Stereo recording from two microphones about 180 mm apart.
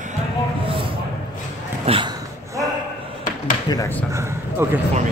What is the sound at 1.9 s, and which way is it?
Speech, 35° right (ahead or behind).